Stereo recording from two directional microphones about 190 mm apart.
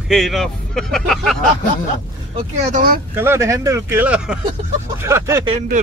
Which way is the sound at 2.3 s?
40° right (ahead or behind).